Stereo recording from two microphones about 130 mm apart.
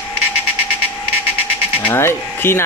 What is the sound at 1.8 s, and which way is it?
Speech, 20° left (ahead or behind).